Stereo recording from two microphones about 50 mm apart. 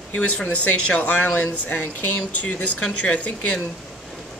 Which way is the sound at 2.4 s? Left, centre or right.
Left.